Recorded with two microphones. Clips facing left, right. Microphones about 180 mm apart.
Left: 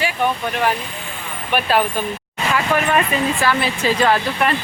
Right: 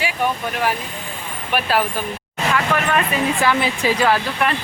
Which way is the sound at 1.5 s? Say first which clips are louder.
Left 2 dB; 5° right (ahead or behind).